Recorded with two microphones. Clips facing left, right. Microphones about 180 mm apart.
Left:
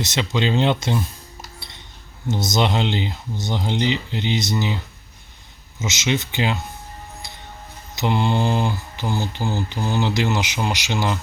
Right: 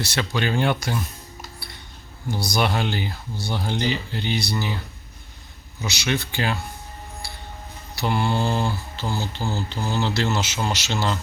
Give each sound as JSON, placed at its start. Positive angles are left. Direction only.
{"t": 0.0, "sound": "speech", "side_deg": 20}
{"t": 1.5, "sound": "a sound", "side_deg": 20}
{"t": 2.2, "sound": "speech", "side_deg": 20}
{"t": 5.8, "sound": "speech", "side_deg": 20}
{"t": 7.2, "sound": "music", "side_deg": 20}
{"t": 7.9, "sound": "mantra", "side_deg": 20}